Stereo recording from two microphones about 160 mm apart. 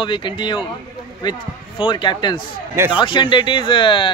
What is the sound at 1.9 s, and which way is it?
A man's voice, 30° left (ahead or behind).